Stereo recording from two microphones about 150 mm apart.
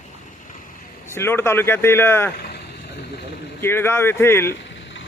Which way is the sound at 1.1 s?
15° left (ahead or behind).